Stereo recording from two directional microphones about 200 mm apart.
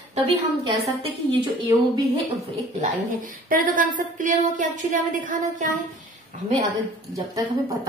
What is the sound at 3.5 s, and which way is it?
A woman's voice, 45° right (ahead or behind).